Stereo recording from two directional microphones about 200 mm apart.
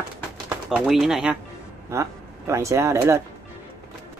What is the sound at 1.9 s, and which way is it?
Speech, 15° right (ahead or behind).